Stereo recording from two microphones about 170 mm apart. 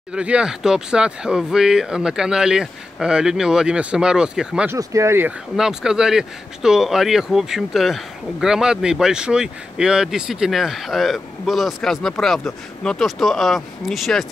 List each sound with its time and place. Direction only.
0.1 s speech: 5° right (ahead or behind)
4.7 s speech: 15° right (ahead or behind)
5.6 s speech: 5° right (ahead or behind)